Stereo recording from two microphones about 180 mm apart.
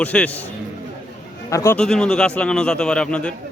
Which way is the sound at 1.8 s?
5° left (ahead or behind).